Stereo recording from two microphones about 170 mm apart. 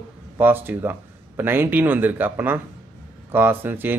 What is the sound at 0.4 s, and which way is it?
Speech, 10° right (ahead or behind).